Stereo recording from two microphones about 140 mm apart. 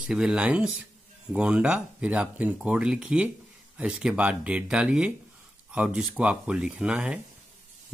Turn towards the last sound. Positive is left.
turn(degrees=-10)  # may be behind; listen again after turning